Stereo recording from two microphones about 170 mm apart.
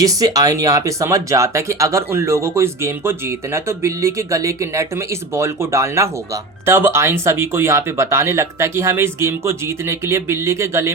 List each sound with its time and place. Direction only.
0.0 s speech: 20° right (ahead or behind)